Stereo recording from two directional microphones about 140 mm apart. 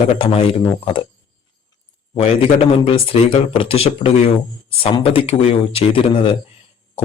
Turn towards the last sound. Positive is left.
turn(degrees=40)  # may be behind; listen again after turning